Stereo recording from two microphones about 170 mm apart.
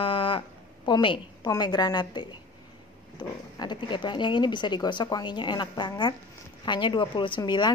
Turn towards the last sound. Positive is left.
turn(degrees=25)  # may be behind; listen again after turning